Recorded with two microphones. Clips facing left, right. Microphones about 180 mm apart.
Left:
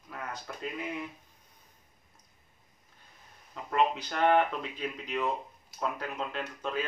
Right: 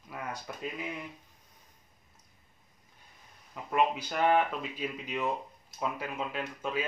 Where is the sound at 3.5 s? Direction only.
10° right (ahead or behind).